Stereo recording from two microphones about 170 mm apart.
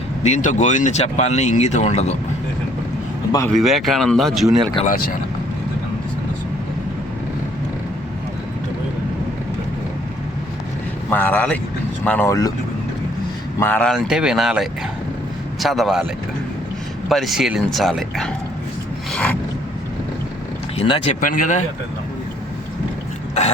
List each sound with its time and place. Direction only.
0.2 s speech: 45° left (ahead or behind)
3.5 s speech: centre (ahead or behind)
11.1 s speech: 10° left (ahead or behind)
13.6 s speech: 10° left (ahead or behind)
13.9 s speech: centre (ahead or behind)
17.1 s speech: centre (ahead or behind)
19.1 s a sound: 10° left (ahead or behind)
20.7 s speech: 30° left (ahead or behind)
21.2 s speech: 50° left (ahead or behind)